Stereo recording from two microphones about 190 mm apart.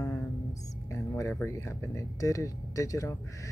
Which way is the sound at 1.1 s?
10° left (ahead or behind).